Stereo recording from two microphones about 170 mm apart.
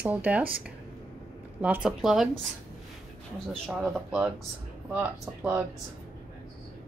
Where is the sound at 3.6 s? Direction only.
Centre (ahead or behind).